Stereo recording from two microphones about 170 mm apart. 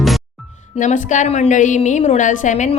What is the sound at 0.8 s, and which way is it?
A woman's voice, 45° left (ahead or behind).